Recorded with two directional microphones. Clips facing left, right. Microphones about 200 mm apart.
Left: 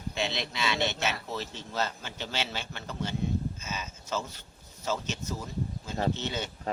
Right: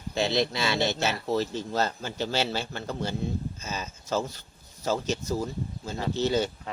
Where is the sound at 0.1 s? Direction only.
35° right (ahead or behind).